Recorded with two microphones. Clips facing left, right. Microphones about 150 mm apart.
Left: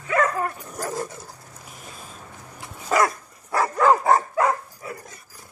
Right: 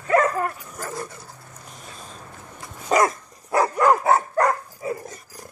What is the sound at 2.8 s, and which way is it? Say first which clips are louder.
Dog: right 2 dB; 20° right (ahead or behind).